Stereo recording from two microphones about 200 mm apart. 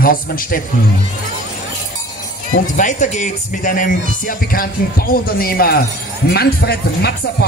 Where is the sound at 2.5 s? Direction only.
40° left (ahead or behind).